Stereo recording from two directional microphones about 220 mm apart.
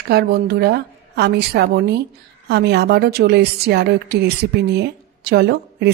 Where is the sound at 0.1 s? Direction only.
45° right (ahead or behind).